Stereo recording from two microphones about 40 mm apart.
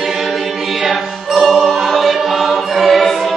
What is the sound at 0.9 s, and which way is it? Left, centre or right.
Choir, centre.